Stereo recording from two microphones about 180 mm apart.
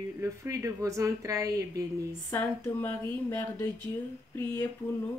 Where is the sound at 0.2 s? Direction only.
15° right (ahead or behind).